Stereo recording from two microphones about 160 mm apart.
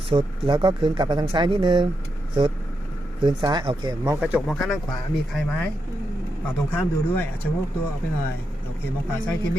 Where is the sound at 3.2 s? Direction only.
25° right (ahead or behind).